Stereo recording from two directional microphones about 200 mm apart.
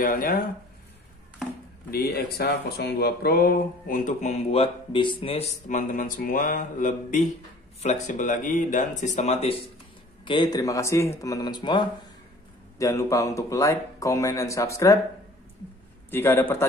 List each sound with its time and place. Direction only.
0.0 s speech: 45° left (ahead or behind)
1.9 s speech: 50° left (ahead or behind); by 15.0 s 15° left (ahead or behind)
16.1 s speech: 10° left (ahead or behind)